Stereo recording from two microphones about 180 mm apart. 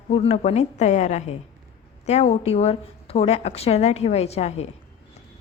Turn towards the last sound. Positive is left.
turn(degrees=35)  # may be behind; listen again after turning